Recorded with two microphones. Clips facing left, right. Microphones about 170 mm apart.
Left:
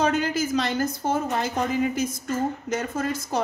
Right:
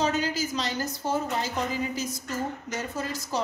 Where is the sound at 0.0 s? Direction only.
55° left (ahead or behind).